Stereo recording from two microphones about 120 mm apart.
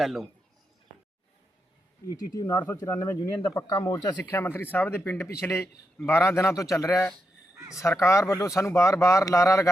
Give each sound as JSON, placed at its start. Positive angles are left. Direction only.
{"t": 0.0, "sound": "speech", "side_deg": 0}
{"t": 2.3, "sound": "speech", "side_deg": 35}